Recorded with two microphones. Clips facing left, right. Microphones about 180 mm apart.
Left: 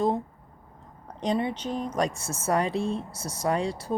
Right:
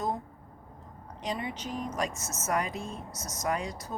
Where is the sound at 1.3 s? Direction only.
30° left (ahead or behind).